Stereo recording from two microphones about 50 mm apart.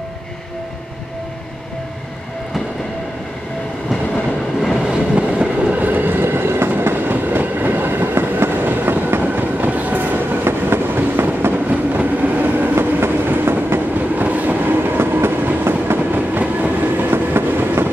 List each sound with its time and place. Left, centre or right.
4.8 s train: right
5.8 s train: right
10.4 s train: right
11.5 s train: right
16.1 s train: right